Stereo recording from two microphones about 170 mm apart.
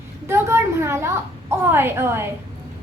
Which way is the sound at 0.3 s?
15° right (ahead or behind).